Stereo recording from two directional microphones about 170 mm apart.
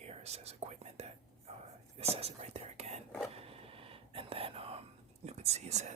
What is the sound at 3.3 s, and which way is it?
Throat clearing, 35° right (ahead or behind).